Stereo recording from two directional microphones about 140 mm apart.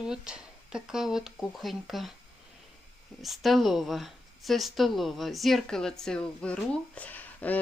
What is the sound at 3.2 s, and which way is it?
Speech, centre (ahead or behind).